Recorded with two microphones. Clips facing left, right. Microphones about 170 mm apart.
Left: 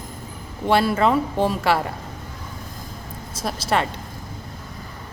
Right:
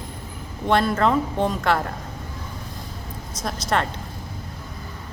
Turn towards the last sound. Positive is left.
turn(degrees=5)  # may be behind; listen again after turning